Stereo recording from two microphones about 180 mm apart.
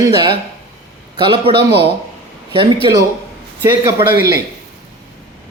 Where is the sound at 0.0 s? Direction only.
25° right (ahead or behind).